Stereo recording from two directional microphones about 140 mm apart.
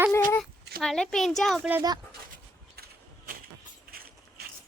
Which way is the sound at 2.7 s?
90° right.